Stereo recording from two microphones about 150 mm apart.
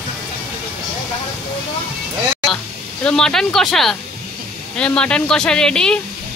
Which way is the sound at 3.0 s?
5° left (ahead or behind).